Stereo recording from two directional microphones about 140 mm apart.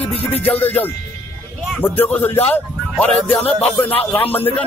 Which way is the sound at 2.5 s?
10° left (ahead or behind).